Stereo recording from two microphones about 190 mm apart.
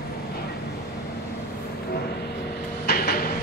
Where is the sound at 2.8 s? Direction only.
55° left (ahead or behind).